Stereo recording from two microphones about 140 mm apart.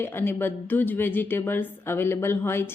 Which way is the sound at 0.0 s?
15° left (ahead or behind).